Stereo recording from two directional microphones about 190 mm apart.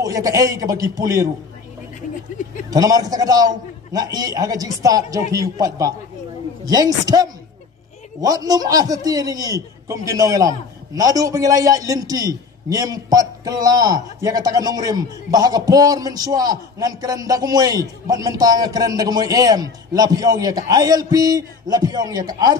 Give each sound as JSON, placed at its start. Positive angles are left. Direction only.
{"t": 0.0, "sound": "a man's voice", "side_deg": -20}
{"t": 2.7, "sound": "a man's voice", "side_deg": -20}